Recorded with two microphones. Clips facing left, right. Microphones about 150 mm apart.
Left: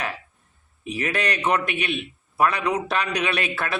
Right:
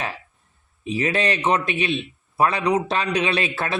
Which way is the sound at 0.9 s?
25° right (ahead or behind).